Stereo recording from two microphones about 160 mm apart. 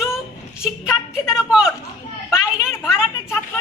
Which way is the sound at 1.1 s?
5° right (ahead or behind).